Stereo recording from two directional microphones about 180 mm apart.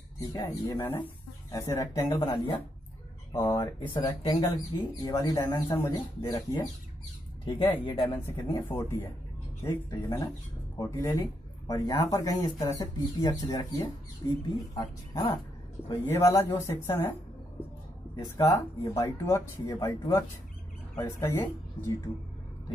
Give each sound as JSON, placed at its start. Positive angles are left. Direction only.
{"t": 0.2, "sound": "speech", "side_deg": 20}
{"t": 3.9, "sound": "speech", "side_deg": 30}
{"t": 8.3, "sound": "speech", "side_deg": 10}
{"t": 16.1, "sound": "speech", "side_deg": 15}
{"t": 18.1, "sound": "speech", "side_deg": 20}